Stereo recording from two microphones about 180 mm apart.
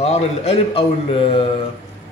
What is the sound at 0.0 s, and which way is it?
A man's voice, 35° left (ahead or behind).